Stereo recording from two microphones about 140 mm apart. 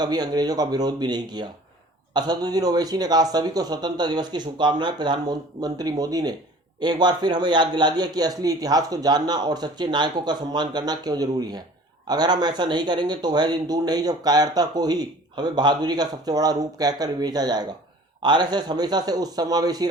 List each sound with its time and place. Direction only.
0.0 s a man's voice: 30° right (ahead or behind)